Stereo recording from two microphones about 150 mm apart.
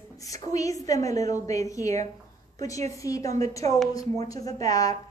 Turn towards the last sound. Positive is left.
turn(degrees=25)  # may be behind; listen again after turning